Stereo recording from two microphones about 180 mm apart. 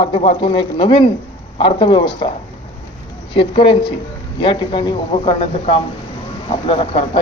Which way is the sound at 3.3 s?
30° left (ahead or behind).